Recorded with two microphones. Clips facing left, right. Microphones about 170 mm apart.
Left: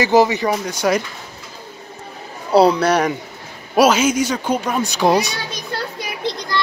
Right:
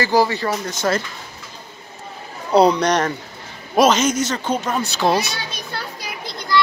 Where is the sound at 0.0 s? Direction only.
20° left (ahead or behind).